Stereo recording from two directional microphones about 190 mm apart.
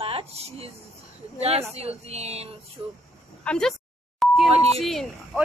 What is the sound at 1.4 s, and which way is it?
A woman's voice, 30° right (ahead or behind).